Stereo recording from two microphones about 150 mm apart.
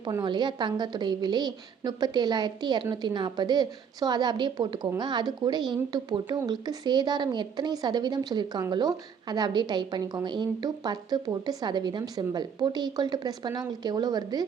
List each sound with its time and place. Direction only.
0.0 s a woman's voice: 25° right (ahead or behind)